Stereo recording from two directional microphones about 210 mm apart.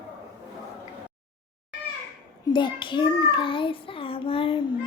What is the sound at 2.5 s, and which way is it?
Child singing, 25° left (ahead or behind).